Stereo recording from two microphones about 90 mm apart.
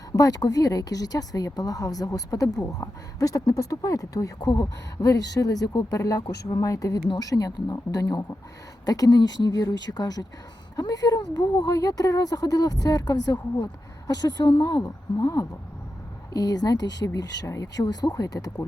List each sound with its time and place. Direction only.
0.1 s a woman's voice: 40° left (ahead or behind)
4.4 s speech: 55° left (ahead or behind)
4.9 s a woman's voice: 40° left (ahead or behind)
14.6 s a woman's voice: 35° left (ahead or behind)